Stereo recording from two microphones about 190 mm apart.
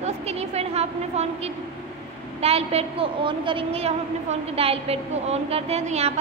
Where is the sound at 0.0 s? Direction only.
35° right (ahead or behind).